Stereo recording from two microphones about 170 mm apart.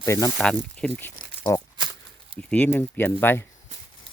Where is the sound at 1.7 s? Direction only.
25° right (ahead or behind).